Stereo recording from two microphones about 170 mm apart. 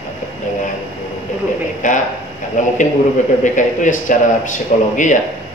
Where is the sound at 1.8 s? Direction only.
45° left (ahead or behind).